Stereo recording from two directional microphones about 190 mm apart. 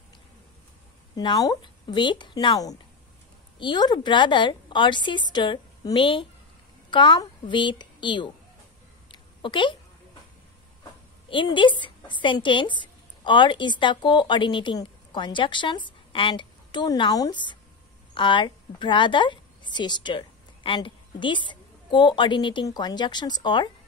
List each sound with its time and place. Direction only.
1.1 s a woman's voice: 20° left (ahead or behind)
9.1 s a sound: 25° left (ahead or behind)
11.2 s a woman's voice: 25° left (ahead or behind)